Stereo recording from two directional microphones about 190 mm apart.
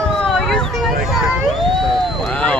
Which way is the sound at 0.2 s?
Centre (ahead or behind).